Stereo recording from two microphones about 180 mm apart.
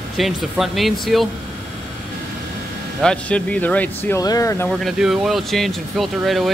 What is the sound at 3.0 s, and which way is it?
Speech, 5° left (ahead or behind).